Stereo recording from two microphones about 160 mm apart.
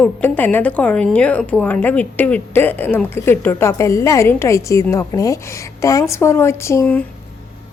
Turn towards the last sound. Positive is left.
turn(degrees=15)  # may be behind; listen again after turning